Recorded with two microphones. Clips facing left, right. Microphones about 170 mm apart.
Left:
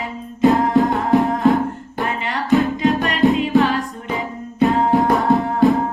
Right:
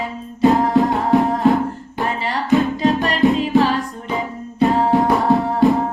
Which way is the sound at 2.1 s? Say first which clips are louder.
Right 3 dB; 35° right (ahead or behind).